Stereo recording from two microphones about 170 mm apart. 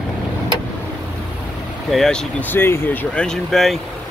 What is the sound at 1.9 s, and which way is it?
Speech, 5° left (ahead or behind).